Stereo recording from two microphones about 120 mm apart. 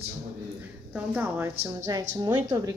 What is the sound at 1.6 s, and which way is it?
Speech, 30° right (ahead or behind).